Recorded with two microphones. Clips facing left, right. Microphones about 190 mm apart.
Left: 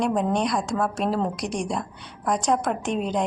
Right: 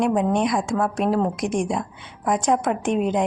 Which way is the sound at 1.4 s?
50° right (ahead or behind).